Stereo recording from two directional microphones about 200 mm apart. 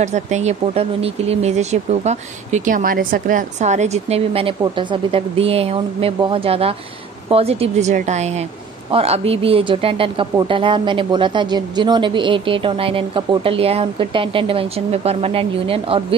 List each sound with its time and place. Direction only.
0.0 s speech: 35° right (ahead or behind)